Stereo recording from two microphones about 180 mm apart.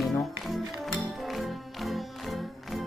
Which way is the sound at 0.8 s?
Centre (ahead or behind).